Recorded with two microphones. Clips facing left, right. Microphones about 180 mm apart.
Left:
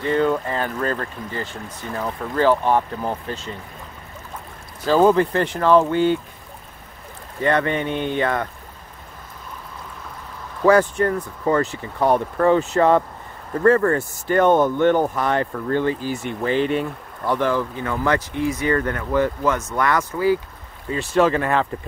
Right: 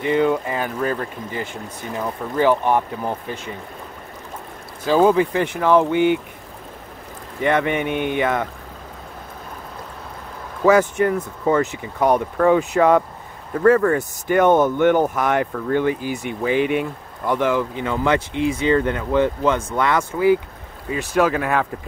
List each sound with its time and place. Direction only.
0.0 s speech: 15° right (ahead or behind)
4.8 s speech: 15° right (ahead or behind)
7.4 s speech: 15° right (ahead or behind)
10.6 s speech: 15° right (ahead or behind)
11.1 s speech: 5° right (ahead or behind)
11.6 s speech: 20° right (ahead or behind)
13.6 s speech: centre (ahead or behind)
13.9 s speech: 15° right (ahead or behind)
20.9 s speech: 10° right (ahead or behind)